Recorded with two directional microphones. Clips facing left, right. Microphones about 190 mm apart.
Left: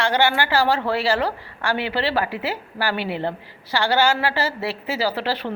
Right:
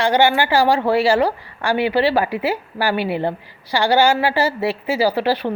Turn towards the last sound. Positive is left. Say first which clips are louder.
# right 6 dB
turn(degrees=-15)  # may be behind; listen again after turning